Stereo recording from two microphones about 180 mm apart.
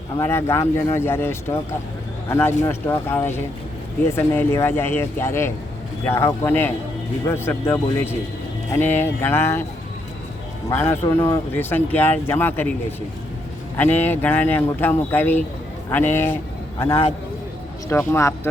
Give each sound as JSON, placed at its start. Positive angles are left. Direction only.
{"t": 0.2, "sound": "speech", "side_deg": 15}
{"t": 2.6, "sound": "speech", "side_deg": 10}
{"t": 10.7, "sound": "speech", "side_deg": 10}
{"t": 13.7, "sound": "speech", "side_deg": 10}
{"t": 16.9, "sound": "a man's voice", "side_deg": 35}
{"t": 17.8, "sound": "speech", "side_deg": 15}